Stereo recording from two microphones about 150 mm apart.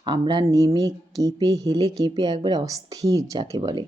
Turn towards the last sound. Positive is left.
turn(degrees=-30)  # may be behind; listen again after turning